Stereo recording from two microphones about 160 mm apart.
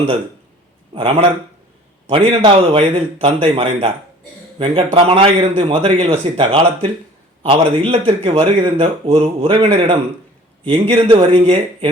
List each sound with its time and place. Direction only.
0.9 s a man's voice: 35° right (ahead or behind)